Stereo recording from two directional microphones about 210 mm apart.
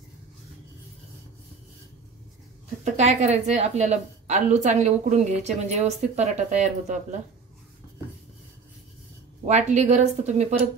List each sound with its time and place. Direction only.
2.8 s speech: 35° right (ahead or behind)
9.5 s speech: 35° right (ahead or behind)